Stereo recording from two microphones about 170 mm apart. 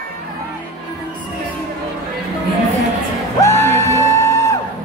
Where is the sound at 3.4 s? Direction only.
15° left (ahead or behind).